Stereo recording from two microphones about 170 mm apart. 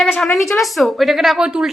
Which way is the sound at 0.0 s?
5° left (ahead or behind).